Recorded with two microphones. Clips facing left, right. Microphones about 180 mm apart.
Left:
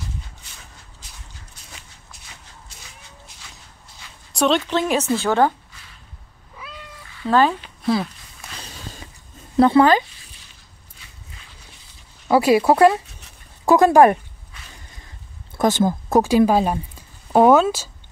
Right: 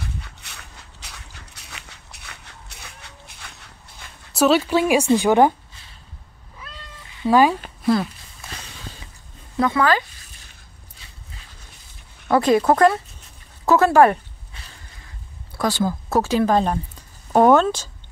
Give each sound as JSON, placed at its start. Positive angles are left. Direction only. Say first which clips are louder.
{"t": 0.0, "sound": "walk", "louder": "right 1 dB", "side_deg": -70}
{"t": 4.3, "sound": "a woman's voice", "louder": "right 2 dB", "side_deg": -5}
{"t": 6.7, "sound": "cat", "louder": "left 3 dB", "side_deg": 10}
{"t": 7.1, "sound": "cat", "louder": "right 2 dB", "side_deg": -15}
{"t": 7.8, "sound": "speech", "louder": "right 1 dB", "side_deg": 0}
{"t": 9.6, "sound": "speech", "louder": "left 6 dB", "side_deg": 30}
{"t": 12.3, "sound": "speech", "louder": "left 1 dB", "side_deg": 10}
{"t": 15.5, "sound": "speech", "louder": "left 4 dB", "side_deg": 20}